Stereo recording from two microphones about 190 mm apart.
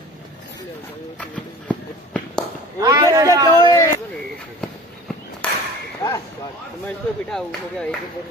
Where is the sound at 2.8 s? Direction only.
20° right (ahead or behind).